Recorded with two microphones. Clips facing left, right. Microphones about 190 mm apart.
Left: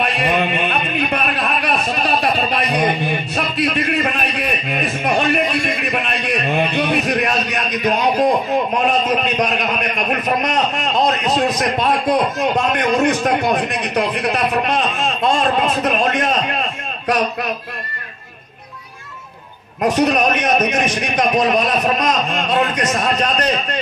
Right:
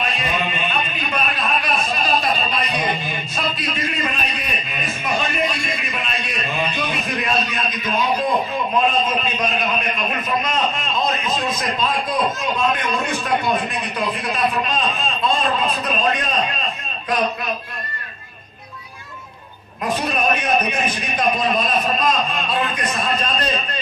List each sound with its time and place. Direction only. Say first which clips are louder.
0.0 s a sound: left 6 dB; 65° left (ahead or behind)
8.7 s a man's voice: right 2 dB; 70° left (ahead or behind)
19.8 s a man's voice: left 6 dB; 75° left (ahead or behind)